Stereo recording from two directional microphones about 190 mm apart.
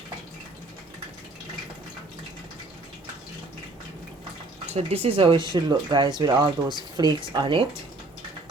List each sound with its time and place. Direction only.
4.7 s speech: 30° right (ahead or behind)